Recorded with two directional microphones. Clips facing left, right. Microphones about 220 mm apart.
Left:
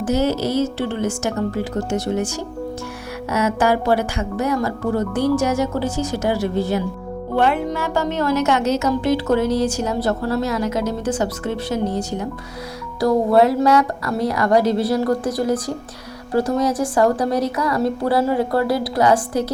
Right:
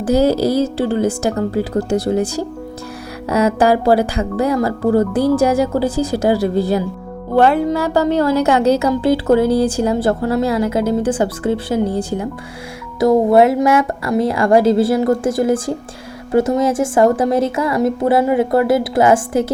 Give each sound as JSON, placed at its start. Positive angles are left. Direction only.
{"t": 0.1, "sound": "speech", "side_deg": -35}
{"t": 3.2, "sound": "speech", "side_deg": -35}
{"t": 5.8, "sound": "speech", "side_deg": -90}
{"t": 6.1, "sound": "speech", "side_deg": -35}
{"t": 13.0, "sound": "a woman's voice", "side_deg": -25}